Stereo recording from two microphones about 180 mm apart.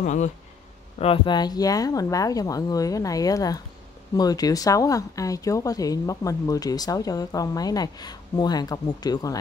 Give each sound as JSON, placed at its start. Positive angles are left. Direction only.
{"t": 0.0, "sound": "speech", "side_deg": 40}
{"t": 0.9, "sound": "speech", "side_deg": 30}